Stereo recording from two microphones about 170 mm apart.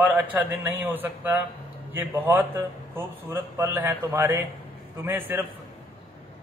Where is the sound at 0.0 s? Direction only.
10° right (ahead or behind).